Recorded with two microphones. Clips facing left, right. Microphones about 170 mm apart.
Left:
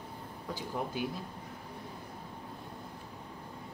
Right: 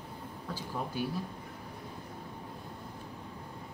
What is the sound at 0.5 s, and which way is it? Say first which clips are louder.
Speech: even; 15° left (ahead or behind).